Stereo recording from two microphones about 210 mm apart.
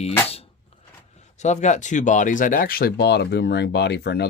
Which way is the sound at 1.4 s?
35° left (ahead or behind).